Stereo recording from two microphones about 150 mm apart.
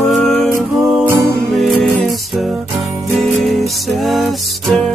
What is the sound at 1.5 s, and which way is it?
Music, centre (ahead or behind).